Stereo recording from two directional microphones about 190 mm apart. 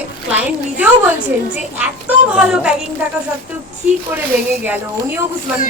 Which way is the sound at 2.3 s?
5° right (ahead or behind).